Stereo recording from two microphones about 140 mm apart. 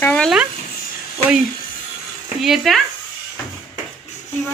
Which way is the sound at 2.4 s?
Centre (ahead or behind).